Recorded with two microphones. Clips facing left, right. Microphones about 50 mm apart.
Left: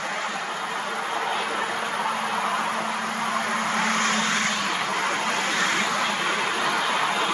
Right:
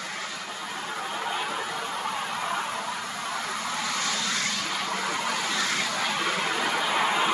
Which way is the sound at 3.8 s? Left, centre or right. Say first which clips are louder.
Left 7 dB; left.